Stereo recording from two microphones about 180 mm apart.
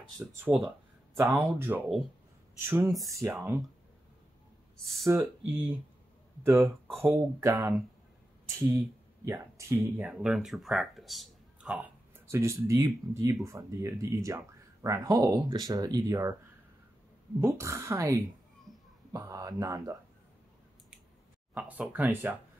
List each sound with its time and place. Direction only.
0.4 s speech: 10° right (ahead or behind)
5.0 s speech: 10° right (ahead or behind)
7.0 s speech: 15° right (ahead or behind)
17.4 s speech: 15° right (ahead or behind)
18.7 s children playing: centre (ahead or behind)
19.1 s speech: 20° right (ahead or behind)
21.5 s speech: 10° right (ahead or behind)